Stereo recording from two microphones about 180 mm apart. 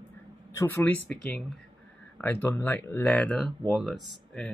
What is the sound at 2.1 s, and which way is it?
Speech, 10° left (ahead or behind).